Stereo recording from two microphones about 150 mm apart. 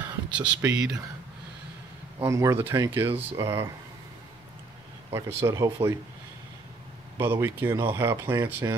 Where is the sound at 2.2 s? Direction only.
20° right (ahead or behind).